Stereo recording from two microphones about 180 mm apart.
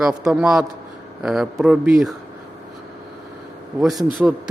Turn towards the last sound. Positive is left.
turn(degrees=0)  # may be behind; listen again after turning